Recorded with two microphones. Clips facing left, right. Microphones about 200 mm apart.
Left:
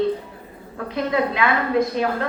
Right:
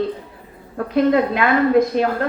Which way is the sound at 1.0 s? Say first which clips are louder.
Right 5 dB; 45° right (ahead or behind).